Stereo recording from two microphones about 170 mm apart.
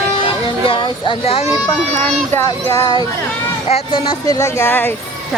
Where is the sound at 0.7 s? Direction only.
30° left (ahead or behind).